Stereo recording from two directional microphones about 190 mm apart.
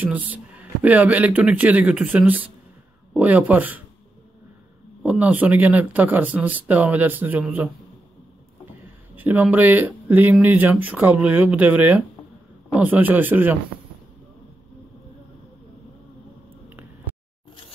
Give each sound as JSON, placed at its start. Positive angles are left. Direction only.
{"t": 0.0, "sound": "speech", "side_deg": -10}
{"t": 5.0, "sound": "speech", "side_deg": -5}
{"t": 9.1, "sound": "speech", "side_deg": -10}